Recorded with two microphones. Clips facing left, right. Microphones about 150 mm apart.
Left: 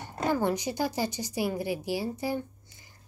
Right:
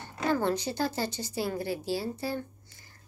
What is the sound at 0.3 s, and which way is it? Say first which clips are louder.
A woman's voice: even; 15° left (ahead or behind).